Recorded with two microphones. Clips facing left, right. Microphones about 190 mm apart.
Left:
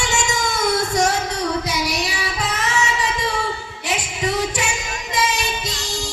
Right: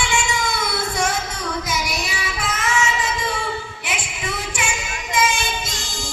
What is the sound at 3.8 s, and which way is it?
Female singing, 40° left (ahead or behind).